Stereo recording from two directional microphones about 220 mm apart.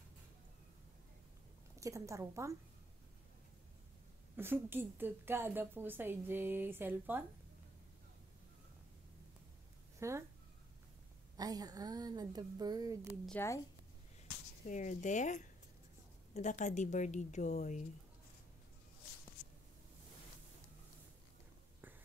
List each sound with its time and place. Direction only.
1.8 s a woman's voice: 15° right (ahead or behind)
4.4 s a woman's voice: 10° right (ahead or behind)
9.9 s speech: 15° right (ahead or behind)
11.3 s a woman's voice: 15° right (ahead or behind)
13.2 s a woman's voice: 10° left (ahead or behind)
14.7 s speech: 35° left (ahead or behind)